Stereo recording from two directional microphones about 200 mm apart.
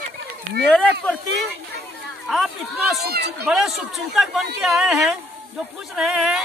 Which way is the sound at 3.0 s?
50° right (ahead or behind).